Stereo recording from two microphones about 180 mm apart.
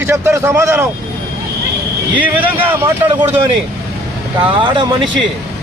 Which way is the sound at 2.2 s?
10° right (ahead or behind).